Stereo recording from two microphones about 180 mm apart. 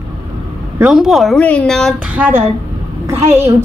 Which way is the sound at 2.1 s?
10° right (ahead or behind).